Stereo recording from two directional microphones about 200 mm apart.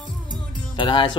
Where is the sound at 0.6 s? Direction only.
25° left (ahead or behind).